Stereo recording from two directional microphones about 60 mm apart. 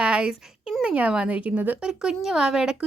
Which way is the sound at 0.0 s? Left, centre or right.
Centre.